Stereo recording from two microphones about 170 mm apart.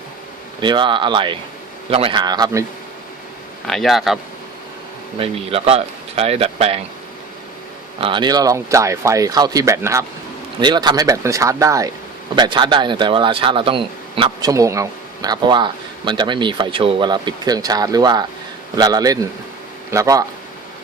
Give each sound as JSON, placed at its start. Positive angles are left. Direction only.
{"t": 0.6, "sound": "a man's voice", "side_deg": -25}
{"t": 3.7, "sound": "speech", "side_deg": 0}
{"t": 5.1, "sound": "speech", "side_deg": -35}
{"t": 8.0, "sound": "a man's voice", "side_deg": -25}
{"t": 14.5, "sound": "a man's voice", "side_deg": -20}